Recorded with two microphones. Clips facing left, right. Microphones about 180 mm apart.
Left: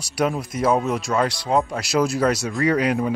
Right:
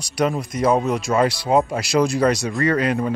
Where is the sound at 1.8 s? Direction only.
5° left (ahead or behind).